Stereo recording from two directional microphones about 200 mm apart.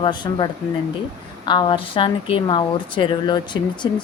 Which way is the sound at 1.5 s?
25° left (ahead or behind).